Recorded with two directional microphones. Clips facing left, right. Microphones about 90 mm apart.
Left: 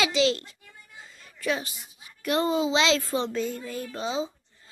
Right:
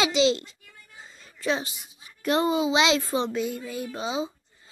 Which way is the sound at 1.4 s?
25° right (ahead or behind).